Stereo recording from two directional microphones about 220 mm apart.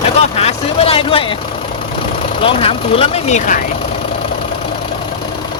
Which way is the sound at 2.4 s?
25° left (ahead or behind).